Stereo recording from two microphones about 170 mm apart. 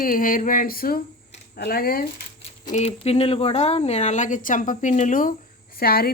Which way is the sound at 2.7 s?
40° left (ahead or behind).